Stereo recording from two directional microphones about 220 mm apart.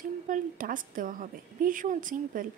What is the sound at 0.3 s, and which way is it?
Speech, 40° right (ahead or behind).